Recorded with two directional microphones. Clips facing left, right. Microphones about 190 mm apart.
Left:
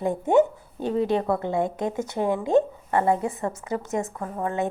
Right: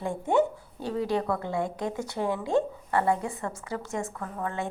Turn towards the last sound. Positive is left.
turn(degrees=25)  # may be behind; listen again after turning